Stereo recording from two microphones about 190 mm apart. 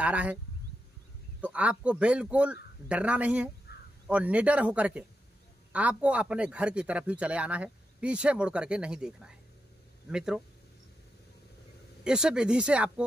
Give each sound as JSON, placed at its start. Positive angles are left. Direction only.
{"t": 0.0, "sound": "a man's voice", "side_deg": -5}
{"t": 1.4, "sound": "a man's voice", "side_deg": -5}
{"t": 3.7, "sound": "a sound", "side_deg": 55}
{"t": 4.1, "sound": "a man's voice", "side_deg": -5}
{"t": 12.0, "sound": "a man's voice", "side_deg": -5}